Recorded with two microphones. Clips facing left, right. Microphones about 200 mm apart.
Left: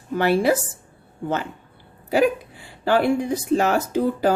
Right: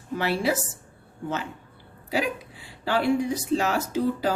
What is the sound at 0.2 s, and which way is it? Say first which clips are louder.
Speech: left 7 dB; 55° left (ahead or behind).